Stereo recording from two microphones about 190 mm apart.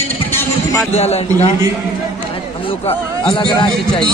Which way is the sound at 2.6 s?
30° left (ahead or behind).